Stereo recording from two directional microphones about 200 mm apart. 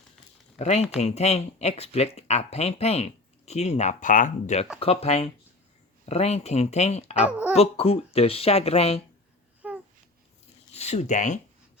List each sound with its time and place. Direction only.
0.6 s speech: 35° left (ahead or behind)
7.2 s speech: 5° right (ahead or behind)
7.5 s speech: 30° left (ahead or behind)
9.6 s babbling: 5° right (ahead or behind)
10.8 s speech: 30° left (ahead or behind)